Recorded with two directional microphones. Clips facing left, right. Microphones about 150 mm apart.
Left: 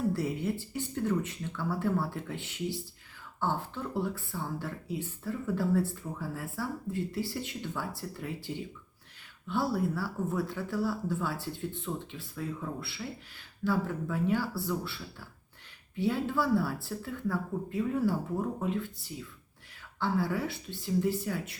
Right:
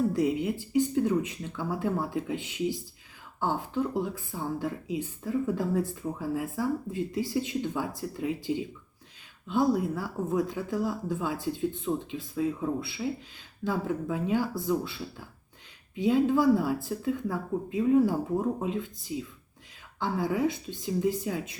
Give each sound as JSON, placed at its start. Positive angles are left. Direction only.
{"t": 0.1, "sound": "speech", "side_deg": -15}